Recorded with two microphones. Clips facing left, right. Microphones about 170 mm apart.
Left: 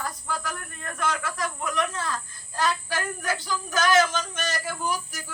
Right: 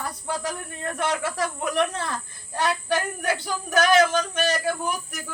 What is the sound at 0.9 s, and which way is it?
Speech, 70° right (ahead or behind).